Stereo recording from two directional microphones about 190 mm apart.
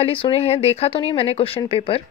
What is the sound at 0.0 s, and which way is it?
Speech, 30° left (ahead or behind).